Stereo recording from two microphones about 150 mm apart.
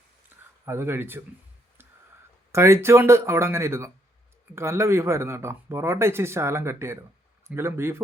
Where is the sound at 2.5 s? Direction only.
20° right (ahead or behind).